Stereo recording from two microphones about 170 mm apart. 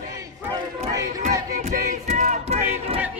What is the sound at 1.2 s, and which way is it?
Battle cry, 40° right (ahead or behind).